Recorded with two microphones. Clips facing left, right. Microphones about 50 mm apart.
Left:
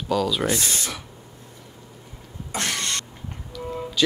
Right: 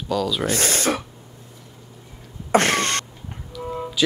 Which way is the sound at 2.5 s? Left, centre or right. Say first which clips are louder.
Right 9 dB; right.